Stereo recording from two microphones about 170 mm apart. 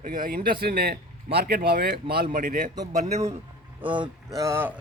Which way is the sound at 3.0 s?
40° right (ahead or behind).